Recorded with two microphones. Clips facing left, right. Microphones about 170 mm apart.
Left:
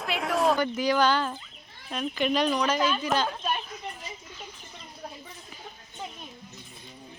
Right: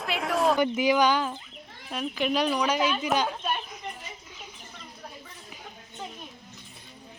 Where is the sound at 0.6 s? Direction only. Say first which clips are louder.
Right 2 dB; 20° right (ahead or behind).